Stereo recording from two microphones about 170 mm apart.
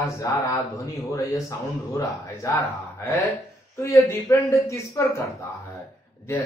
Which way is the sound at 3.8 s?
15° left (ahead or behind).